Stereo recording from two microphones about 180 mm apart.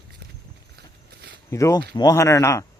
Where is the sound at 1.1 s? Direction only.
65° right (ahead or behind).